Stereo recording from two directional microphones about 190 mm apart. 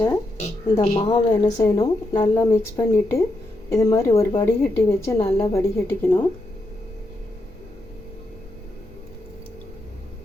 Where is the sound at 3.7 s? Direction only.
15° left (ahead or behind).